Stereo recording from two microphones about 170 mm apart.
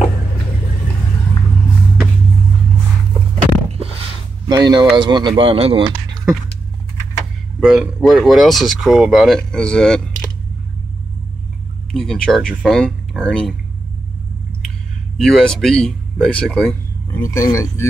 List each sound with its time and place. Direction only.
4.5 s speech: 25° right (ahead or behind)
7.6 s speech: 5° right (ahead or behind)
11.9 s speech: 5° left (ahead or behind)
15.1 s speech: 5° left (ahead or behind)
17.2 s a man's voice: 20° left (ahead or behind)